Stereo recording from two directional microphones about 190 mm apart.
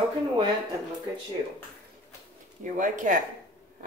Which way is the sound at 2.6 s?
40° right (ahead or behind).